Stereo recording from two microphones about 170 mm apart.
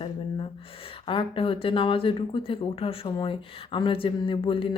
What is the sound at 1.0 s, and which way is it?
Speech, 30° left (ahead or behind).